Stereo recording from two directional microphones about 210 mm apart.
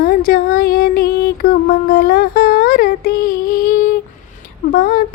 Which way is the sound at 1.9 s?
45° left (ahead or behind).